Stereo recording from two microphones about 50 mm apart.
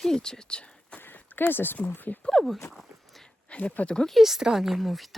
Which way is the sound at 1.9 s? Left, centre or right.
Left.